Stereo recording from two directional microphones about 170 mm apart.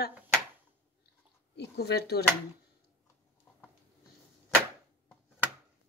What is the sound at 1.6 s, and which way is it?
Speech, 70° left (ahead or behind).